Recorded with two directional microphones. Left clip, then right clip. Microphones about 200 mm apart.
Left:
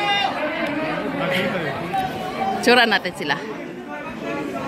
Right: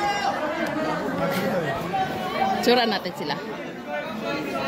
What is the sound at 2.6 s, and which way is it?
Speech, centre (ahead or behind).